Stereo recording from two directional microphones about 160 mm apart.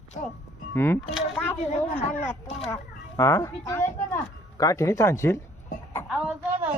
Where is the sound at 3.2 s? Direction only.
20° left (ahead or behind).